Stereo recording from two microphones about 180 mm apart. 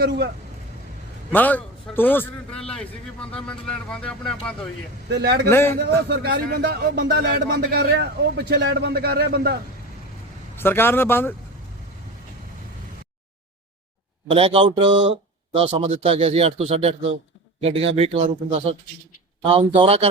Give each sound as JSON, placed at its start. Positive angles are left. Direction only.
{"t": 1.3, "sound": "a man's voice", "side_deg": 10}
{"t": 5.0, "sound": "speech", "side_deg": -65}
{"t": 5.5, "sound": "speech", "side_deg": 15}
{"t": 6.1, "sound": "speech", "side_deg": -65}
{"t": 10.6, "sound": "speech", "side_deg": 10}
{"t": 14.3, "sound": "speech", "side_deg": -30}